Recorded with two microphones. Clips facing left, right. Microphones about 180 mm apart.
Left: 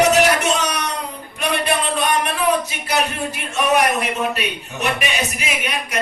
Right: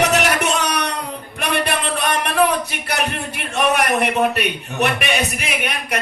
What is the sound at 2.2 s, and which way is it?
Speech, 60° right (ahead or behind).